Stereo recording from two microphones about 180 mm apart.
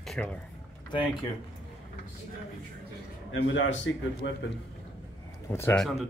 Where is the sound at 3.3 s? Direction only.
90° left.